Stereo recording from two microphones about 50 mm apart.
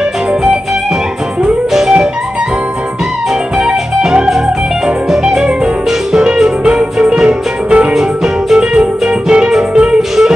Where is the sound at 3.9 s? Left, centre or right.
Centre.